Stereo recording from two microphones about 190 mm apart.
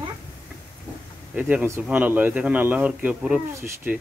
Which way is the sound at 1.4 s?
10° right (ahead or behind).